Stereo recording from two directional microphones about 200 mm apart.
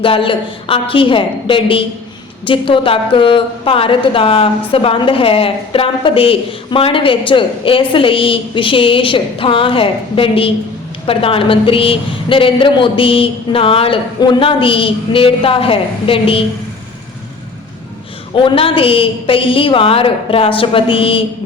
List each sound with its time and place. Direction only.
0.0 s a woman's voice: 25° left (ahead or behind)
18.3 s a woman's voice: 25° left (ahead or behind)